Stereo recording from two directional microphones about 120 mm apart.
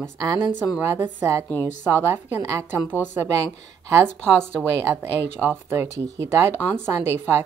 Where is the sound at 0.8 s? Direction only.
25° right (ahead or behind).